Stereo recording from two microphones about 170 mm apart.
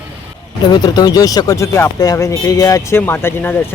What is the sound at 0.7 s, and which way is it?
Speech, 25° left (ahead or behind).